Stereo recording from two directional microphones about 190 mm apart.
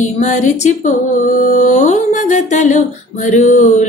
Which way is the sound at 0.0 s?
40° left (ahead or behind).